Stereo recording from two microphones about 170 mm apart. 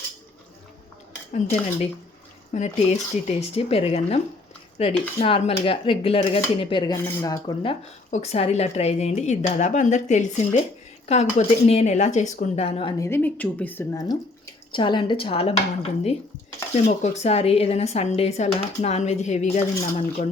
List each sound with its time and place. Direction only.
1.3 s speech: 40° left (ahead or behind)
6.9 s speech: 20° left (ahead or behind)
8.1 s speech: 40° left (ahead or behind)
13.0 s speech: 15° left (ahead or behind)
13.9 s speech: 20° left (ahead or behind); by 20.2 s 40° left (ahead or behind)